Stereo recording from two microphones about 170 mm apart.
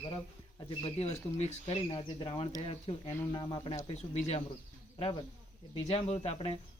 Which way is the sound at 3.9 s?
40° left (ahead or behind).